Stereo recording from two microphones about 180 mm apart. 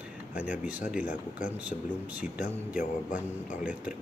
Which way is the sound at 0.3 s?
10° right (ahead or behind).